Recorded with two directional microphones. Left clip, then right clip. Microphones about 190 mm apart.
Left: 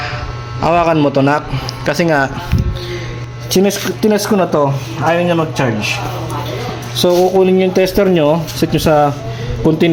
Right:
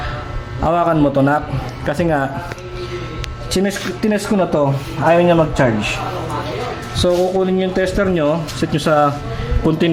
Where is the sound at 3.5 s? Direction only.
25° left (ahead or behind).